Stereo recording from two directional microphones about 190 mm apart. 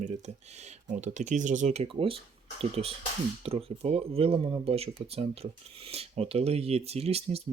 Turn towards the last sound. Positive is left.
turn(degrees=-30)  # may be behind; listen again after turning